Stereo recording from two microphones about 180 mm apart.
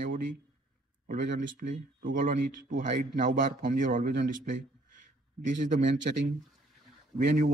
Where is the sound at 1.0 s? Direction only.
45° right (ahead or behind).